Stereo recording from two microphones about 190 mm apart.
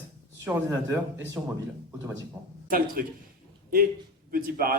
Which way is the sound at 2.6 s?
50° right (ahead or behind).